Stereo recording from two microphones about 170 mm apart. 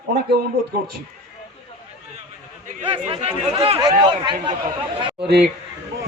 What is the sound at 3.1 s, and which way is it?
Speech, 35° right (ahead or behind).